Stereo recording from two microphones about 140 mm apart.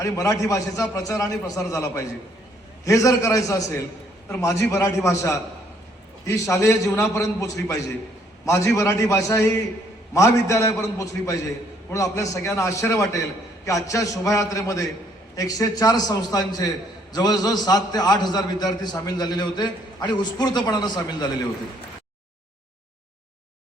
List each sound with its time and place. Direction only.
0.0 s a man's voice: 25° left (ahead or behind)
2.8 s a man's voice: 25° left (ahead or behind)